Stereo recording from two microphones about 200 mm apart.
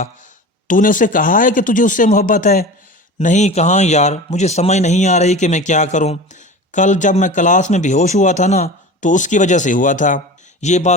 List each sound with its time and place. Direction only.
0.7 s speech: 40° left (ahead or behind)
3.2 s speech: 35° left (ahead or behind)